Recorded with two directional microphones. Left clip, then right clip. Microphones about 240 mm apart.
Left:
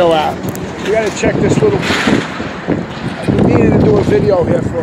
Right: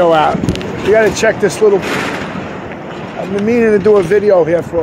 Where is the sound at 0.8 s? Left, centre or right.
Right.